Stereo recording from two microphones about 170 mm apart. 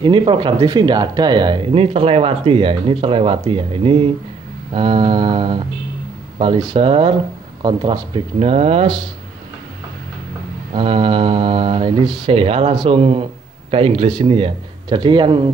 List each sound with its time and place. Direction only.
0.0 s speech: 30° right (ahead or behind)
10.7 s speech: 30° right (ahead or behind)